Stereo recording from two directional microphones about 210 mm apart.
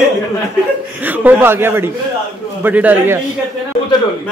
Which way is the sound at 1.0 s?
10° right (ahead or behind).